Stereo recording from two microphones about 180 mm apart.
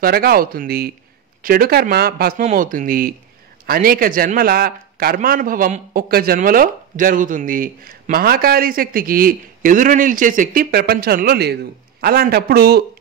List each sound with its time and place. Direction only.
0.0 s speech: 55° right (ahead or behind)
2.4 s a man's voice: 45° right (ahead or behind)